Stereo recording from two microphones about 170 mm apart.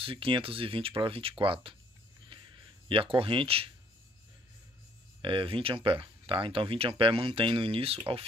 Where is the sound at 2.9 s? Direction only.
30° right (ahead or behind).